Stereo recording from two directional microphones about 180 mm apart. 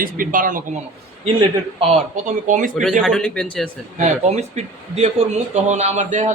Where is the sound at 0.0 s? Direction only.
50° right (ahead or behind).